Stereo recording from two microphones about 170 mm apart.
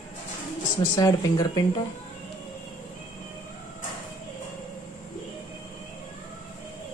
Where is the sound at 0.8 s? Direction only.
20° left (ahead or behind).